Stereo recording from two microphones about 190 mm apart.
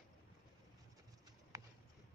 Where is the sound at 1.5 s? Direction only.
15° right (ahead or behind).